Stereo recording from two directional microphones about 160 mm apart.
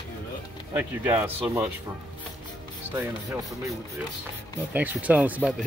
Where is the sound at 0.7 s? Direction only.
15° right (ahead or behind).